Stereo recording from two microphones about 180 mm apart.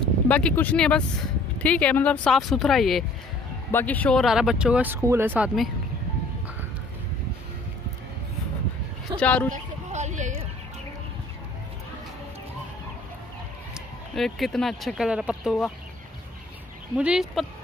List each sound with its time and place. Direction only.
0.3 s speech: 5° left (ahead or behind)
9.2 s speech: 10° left (ahead or behind)
9.5 s a sound: 40° right (ahead or behind)
13.7 s speech: centre (ahead or behind)
16.9 s speech: 5° right (ahead or behind)